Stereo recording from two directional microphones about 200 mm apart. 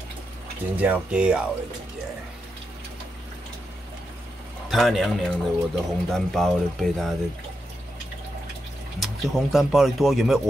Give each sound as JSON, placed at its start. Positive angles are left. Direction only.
{"t": 0.7, "sound": "speech", "side_deg": -10}
{"t": 4.6, "sound": "speech", "side_deg": 0}
{"t": 9.0, "sound": "speech", "side_deg": 0}